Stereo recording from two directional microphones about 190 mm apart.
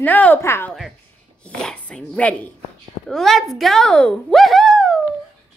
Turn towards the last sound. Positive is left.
turn(degrees=0)  # may be behind; listen again after turning